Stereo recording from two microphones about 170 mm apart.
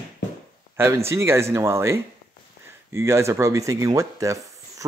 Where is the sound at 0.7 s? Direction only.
15° right (ahead or behind).